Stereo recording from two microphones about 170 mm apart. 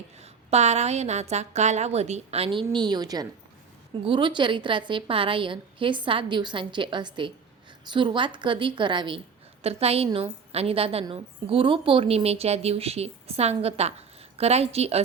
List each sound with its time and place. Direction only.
0.2 s a woman's voice: 40° right (ahead or behind)